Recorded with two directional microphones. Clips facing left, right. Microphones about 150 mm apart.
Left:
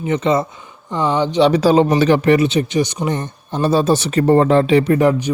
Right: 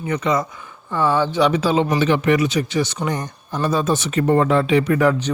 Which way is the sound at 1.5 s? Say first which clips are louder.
Left 5 dB; 35° left (ahead or behind).